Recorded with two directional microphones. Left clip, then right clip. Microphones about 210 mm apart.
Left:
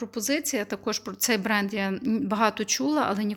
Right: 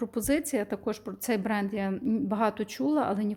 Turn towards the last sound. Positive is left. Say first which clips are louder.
# left 2 dB
turn(degrees=0)  # may be behind; listen again after turning